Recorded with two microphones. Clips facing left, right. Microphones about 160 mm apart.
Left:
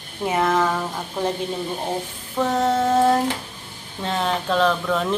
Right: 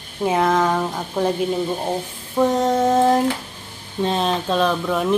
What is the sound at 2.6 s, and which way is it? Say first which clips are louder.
Child singing: left 2 dB; 15° right (ahead or behind).